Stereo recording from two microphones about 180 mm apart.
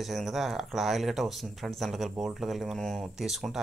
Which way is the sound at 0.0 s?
Centre (ahead or behind).